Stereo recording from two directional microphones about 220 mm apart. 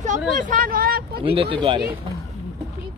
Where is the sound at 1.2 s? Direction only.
25° right (ahead or behind).